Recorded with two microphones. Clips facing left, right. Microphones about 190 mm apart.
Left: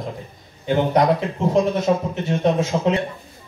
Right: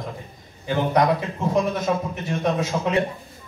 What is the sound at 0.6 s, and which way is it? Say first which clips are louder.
Speech: left 3 dB; 25° left (ahead or behind).